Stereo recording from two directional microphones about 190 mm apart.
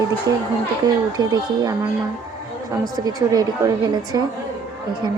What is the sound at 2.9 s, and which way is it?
Speech, 20° right (ahead or behind).